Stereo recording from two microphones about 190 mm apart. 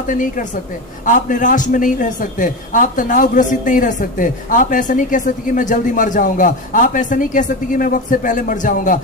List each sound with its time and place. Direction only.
0.0 s a man's voice: 45° left (ahead or behind)